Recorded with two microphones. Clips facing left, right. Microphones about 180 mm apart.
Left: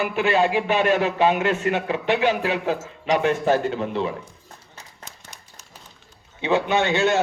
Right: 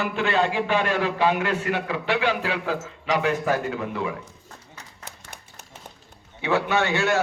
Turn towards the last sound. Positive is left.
turn(degrees=20)  # may be behind; listen again after turning